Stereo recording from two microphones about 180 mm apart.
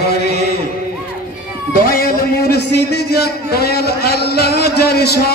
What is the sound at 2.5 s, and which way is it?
A man's voice, 65° left (ahead or behind).